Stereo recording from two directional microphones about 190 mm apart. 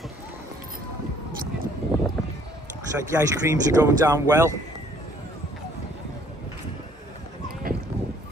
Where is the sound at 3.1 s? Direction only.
15° right (ahead or behind).